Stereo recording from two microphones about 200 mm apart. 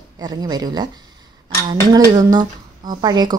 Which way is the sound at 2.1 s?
20° right (ahead or behind).